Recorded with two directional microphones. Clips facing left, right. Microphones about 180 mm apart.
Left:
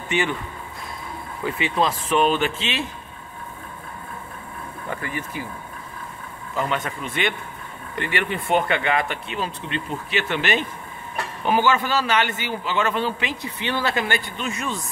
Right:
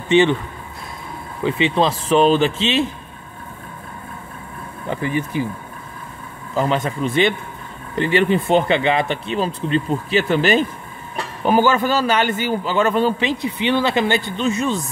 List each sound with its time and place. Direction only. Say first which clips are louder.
0.1 s speech: right 10 dB; 25° right (ahead or behind)
1.4 s speech: right 5 dB; 25° right (ahead or behind)
4.8 s speech: right 8 dB; 25° right (ahead or behind)
6.5 s a man's voice: right 6 dB; 35° right (ahead or behind)
13.4 s speech: right 7 dB; 20° right (ahead or behind)